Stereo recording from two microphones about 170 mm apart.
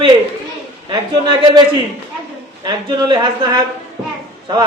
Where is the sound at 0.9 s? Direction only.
25° right (ahead or behind).